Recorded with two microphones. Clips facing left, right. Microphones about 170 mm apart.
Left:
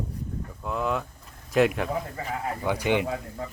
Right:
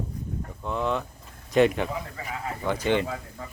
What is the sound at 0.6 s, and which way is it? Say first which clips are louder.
Speech: right 1 dB; 5° left (ahead or behind).